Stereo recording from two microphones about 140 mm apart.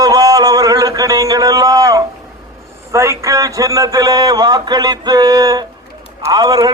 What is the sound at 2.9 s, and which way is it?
A man's voice, 20° right (ahead or behind).